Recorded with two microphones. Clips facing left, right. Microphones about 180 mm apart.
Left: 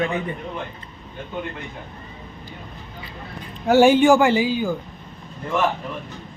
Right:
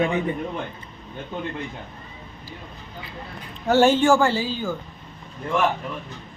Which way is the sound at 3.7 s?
10° left (ahead or behind).